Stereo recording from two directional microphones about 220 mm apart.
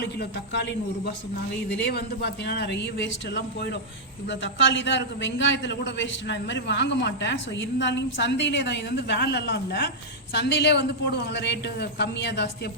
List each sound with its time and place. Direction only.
0.0 s a man's voice: 50° left (ahead or behind)